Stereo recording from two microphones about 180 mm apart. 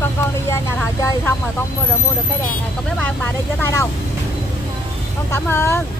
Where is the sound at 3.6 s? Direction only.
15° left (ahead or behind).